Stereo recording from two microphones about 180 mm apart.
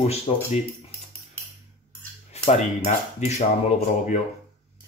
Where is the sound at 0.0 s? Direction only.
35° left (ahead or behind).